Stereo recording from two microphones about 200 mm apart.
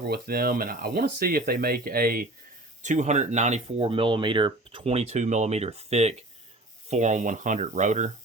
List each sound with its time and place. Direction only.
0.1 s speech: 50° right (ahead or behind)